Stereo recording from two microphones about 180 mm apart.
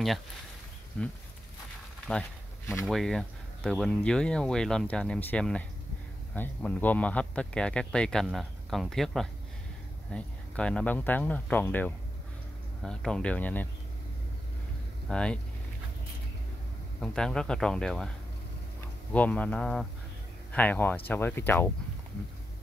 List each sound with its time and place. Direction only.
1.0 s a man's voice: 5° left (ahead or behind)
2.6 s speech: 15° left (ahead or behind)
2.9 s a man's voice: centre (ahead or behind)
15.0 s a man's voice: 5° left (ahead or behind)
17.0 s a man's voice: 5° left (ahead or behind)
19.1 s speech: 10° left (ahead or behind)